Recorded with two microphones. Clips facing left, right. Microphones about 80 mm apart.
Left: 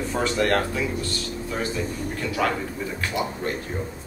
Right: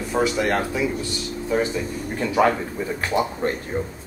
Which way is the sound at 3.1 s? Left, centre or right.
Right.